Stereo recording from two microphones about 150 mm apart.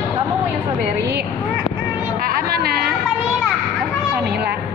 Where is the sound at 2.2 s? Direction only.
85° right.